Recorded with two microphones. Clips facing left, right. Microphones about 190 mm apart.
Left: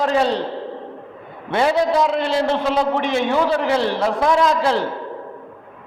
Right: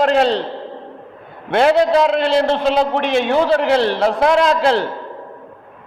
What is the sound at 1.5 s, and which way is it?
A man's voice, 75° right (ahead or behind).